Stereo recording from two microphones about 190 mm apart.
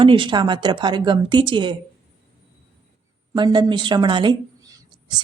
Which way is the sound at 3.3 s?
25° right (ahead or behind).